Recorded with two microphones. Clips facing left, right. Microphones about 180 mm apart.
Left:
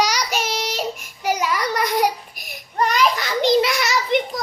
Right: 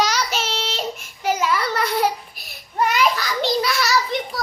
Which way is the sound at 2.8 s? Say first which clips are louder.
Even; 5° right (ahead or behind).